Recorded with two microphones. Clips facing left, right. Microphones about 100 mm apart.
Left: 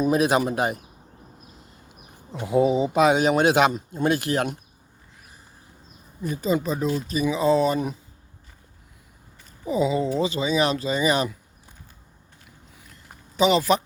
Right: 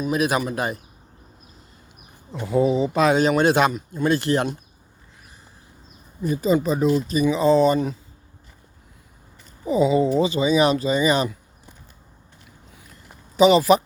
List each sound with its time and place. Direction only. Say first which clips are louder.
0.0 s speech: left 2 dB; 30° left (ahead or behind)
2.4 s a man's voice: even; 15° left (ahead or behind)
3.7 s speech: right 1 dB; 25° left (ahead or behind)
4.1 s a man's voice: right 5 dB; 5° left (ahead or behind)
6.3 s speech: right 4 dB; 5° right (ahead or behind)
9.6 s speech: right 4 dB; centre (ahead or behind)
12.9 s a sound: right 1 dB; 5° right (ahead or behind)